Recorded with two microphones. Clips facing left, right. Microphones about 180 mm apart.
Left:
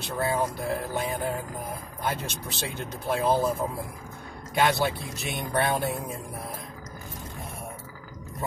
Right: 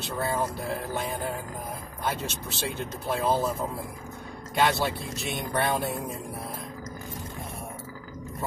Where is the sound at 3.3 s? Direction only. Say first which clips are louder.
Left 3 dB; 15° left (ahead or behind).